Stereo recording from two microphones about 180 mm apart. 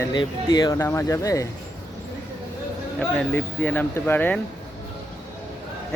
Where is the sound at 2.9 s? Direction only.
10° left (ahead or behind).